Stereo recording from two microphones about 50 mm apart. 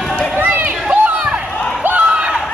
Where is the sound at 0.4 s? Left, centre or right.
Right.